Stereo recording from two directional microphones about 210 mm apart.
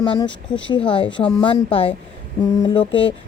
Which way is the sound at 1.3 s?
25° left (ahead or behind).